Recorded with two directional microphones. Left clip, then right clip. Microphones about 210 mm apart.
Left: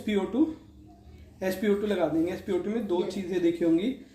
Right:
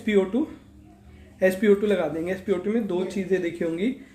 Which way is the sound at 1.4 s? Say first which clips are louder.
Right 7 dB; 55° right (ahead or behind).